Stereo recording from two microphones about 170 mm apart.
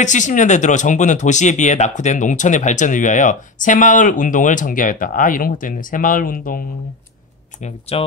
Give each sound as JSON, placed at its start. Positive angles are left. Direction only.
{"t": 0.0, "sound": "speech", "side_deg": 45}
{"t": 7.9, "sound": "speech", "side_deg": 35}